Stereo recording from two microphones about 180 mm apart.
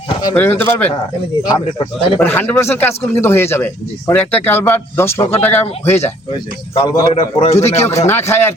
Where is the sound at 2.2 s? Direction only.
10° left (ahead or behind).